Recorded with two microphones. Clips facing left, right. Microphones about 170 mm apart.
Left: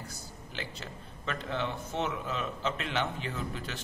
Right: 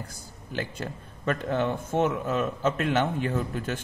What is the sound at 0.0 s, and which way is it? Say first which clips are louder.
A man's voice: right 2 dB; 50° right (ahead or behind).